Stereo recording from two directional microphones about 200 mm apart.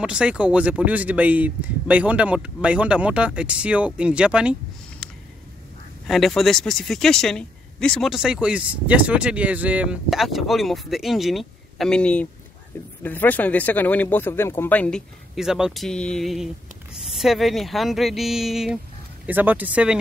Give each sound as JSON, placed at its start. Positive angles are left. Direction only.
{"t": 0.0, "sound": "speech", "side_deg": -5}
{"t": 5.0, "sound": "a sound", "side_deg": 5}
{"t": 6.0, "sound": "speech", "side_deg": 0}